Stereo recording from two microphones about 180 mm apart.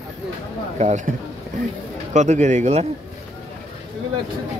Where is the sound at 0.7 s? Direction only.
40° right (ahead or behind).